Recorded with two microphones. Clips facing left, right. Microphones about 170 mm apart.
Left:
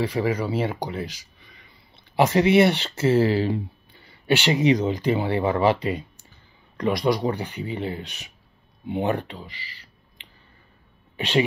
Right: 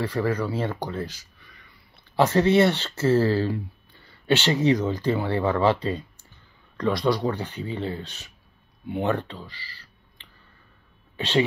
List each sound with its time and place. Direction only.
0.0 s speech: 15° left (ahead or behind)